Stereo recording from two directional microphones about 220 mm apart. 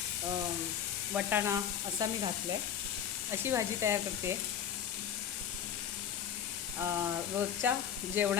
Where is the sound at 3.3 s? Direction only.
10° right (ahead or behind).